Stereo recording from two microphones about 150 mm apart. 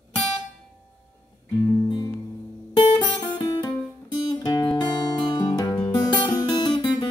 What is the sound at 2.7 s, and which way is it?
Guitar, 30° left (ahead or behind).